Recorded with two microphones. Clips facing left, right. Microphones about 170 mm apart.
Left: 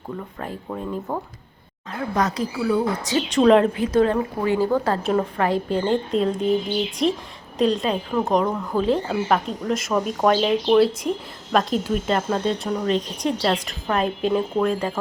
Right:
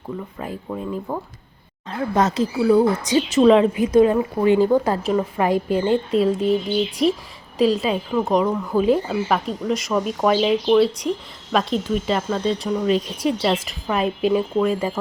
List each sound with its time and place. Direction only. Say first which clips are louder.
0.3 s speech: right 2 dB; 5° right (ahead or behind)
2.1 s speech: right 4 dB; 25° right (ahead or behind)
3.2 s speech: right 1 dB; 5° right (ahead or behind)
3.9 s a woman's voice: right 4 dB; 10° right (ahead or behind)